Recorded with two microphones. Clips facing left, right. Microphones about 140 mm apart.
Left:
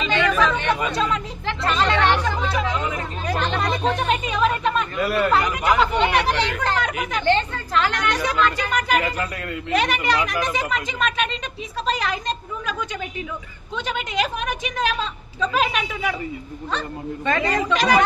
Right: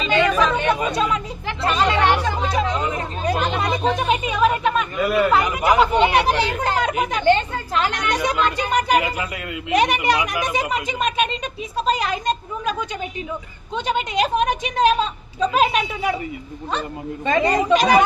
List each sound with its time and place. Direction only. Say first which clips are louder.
0.1 s chatter: right 3 dB; 20° right (ahead or behind)
0.9 s speech: right 2 dB; 10° right (ahead or behind)
1.7 s chatter: right 1 dB; 10° right (ahead or behind)
2.2 s chatter: right 2 dB; 25° right (ahead or behind)
3.3 s chatter: right 1 dB; 10° right (ahead or behind)
6.9 s speech: right 6 dB; 25° right (ahead or behind)
8.8 s a woman's voice: right 2 dB; 15° right (ahead or behind)
13.7 s speech: right 4 dB; 20° right (ahead or behind)